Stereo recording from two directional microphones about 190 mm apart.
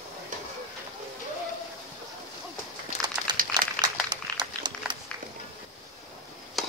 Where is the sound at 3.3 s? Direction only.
20° right (ahead or behind).